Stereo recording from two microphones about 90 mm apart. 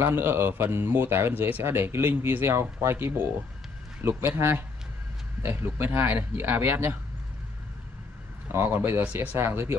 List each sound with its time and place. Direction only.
0.0 s speech: 25° right (ahead or behind)
8.5 s speech: 25° right (ahead or behind)